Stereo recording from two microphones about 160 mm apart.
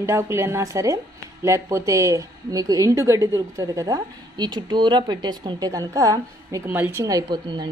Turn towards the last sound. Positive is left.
turn(degrees=-25)  # may be behind; listen again after turning